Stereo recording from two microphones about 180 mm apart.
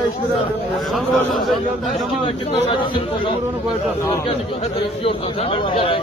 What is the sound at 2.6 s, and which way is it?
Speech, 30° left (ahead or behind).